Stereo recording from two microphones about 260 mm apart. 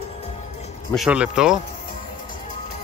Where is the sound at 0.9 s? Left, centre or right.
Centre.